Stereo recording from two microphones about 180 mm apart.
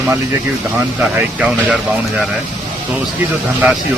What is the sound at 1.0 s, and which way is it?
Speech, 5° right (ahead or behind).